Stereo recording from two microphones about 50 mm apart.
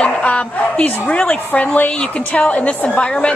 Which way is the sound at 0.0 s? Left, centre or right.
Left.